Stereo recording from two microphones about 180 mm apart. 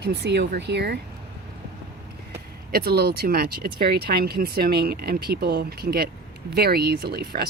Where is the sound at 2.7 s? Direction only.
60° right (ahead or behind).